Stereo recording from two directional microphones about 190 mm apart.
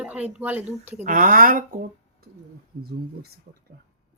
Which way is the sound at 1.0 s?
45° right (ahead or behind).